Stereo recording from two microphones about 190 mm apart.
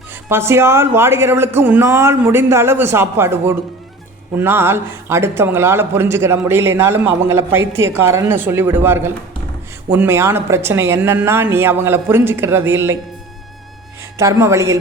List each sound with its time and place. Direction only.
0.3 s a man's voice: 15° right (ahead or behind)
14.2 s a man's voice: 15° right (ahead or behind)